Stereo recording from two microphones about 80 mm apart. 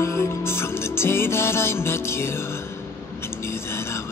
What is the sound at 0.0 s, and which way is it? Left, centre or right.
Music, left.